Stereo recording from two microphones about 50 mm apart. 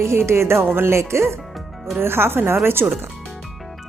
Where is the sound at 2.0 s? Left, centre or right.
Right.